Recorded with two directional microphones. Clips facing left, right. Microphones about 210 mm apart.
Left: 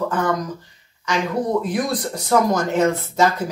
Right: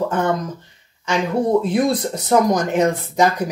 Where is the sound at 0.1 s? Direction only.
25° right (ahead or behind).